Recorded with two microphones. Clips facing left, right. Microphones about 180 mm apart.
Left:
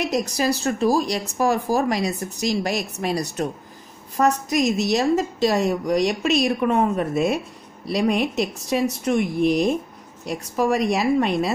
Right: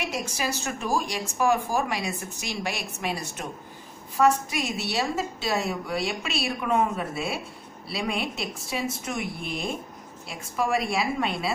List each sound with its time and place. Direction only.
0.0 s speech: 40° left (ahead or behind)
7.9 s speech: 40° left (ahead or behind)